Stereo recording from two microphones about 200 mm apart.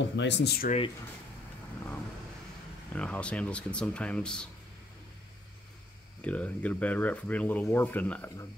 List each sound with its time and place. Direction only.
0.1 s speech: 60° left (ahead or behind)
0.7 s speech: 30° left (ahead or behind)
2.9 s speech: 5° left (ahead or behind)
6.2 s speech: 5° left (ahead or behind)